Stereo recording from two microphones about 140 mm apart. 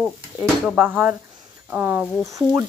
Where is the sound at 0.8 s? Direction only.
10° right (ahead or behind).